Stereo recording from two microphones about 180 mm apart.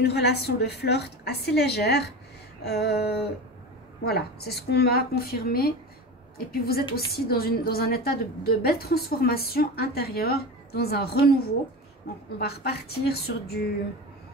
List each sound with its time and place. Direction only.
0.0 s a woman's voice: 65° left (ahead or behind)